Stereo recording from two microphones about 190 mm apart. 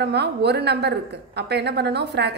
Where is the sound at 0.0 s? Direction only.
60° right (ahead or behind).